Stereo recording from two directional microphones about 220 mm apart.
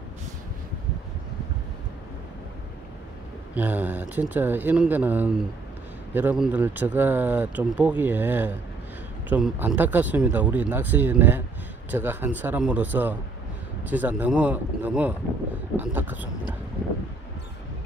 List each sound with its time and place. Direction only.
3.5 s speech: 10° right (ahead or behind)